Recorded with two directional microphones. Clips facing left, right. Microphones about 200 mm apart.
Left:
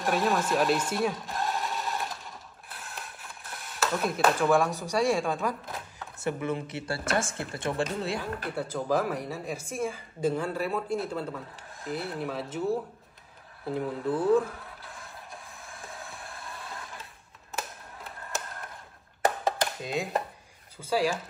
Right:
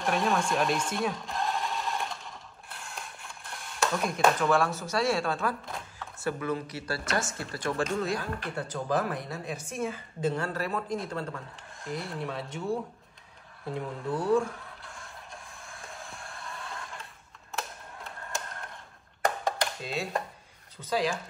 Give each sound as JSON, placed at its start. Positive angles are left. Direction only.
{"t": 0.0, "sound": "sewing machine", "side_deg": 0}
{"t": 5.9, "sound": "speech", "side_deg": 20}
{"t": 8.5, "sound": "a woman's voice", "side_deg": 5}
{"t": 15.6, "sound": "a sound", "side_deg": 0}
{"t": 17.5, "sound": "typewriter", "side_deg": 0}
{"t": 19.2, "sound": "a sound", "side_deg": 0}
{"t": 19.9, "sound": "a woman's voice", "side_deg": 15}